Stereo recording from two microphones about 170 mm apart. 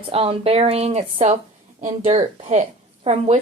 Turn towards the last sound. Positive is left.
turn(degrees=-40)  # may be behind; listen again after turning